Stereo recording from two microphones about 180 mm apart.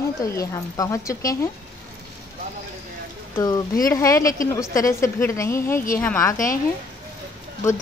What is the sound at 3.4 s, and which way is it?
Speech, 20° left (ahead or behind).